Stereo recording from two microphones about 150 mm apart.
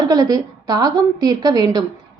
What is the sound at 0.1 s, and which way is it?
A woman's voice, 25° right (ahead or behind).